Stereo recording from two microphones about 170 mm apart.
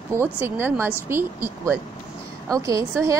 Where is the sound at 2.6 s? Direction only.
20° right (ahead or behind).